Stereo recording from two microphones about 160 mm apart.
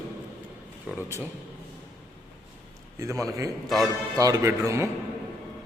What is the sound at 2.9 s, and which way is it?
A man's voice, 20° right (ahead or behind).